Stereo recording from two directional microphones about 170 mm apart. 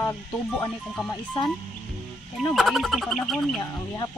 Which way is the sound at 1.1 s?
25° left (ahead or behind).